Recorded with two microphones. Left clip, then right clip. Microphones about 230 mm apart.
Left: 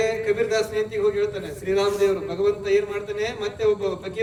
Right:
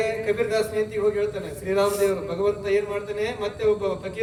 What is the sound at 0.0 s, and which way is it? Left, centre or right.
A man's voice, left.